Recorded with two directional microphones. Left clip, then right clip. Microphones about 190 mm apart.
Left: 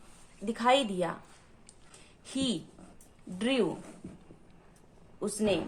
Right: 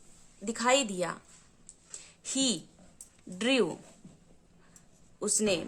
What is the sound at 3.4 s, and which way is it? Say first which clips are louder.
Speech: right 2 dB; 40° right (ahead or behind).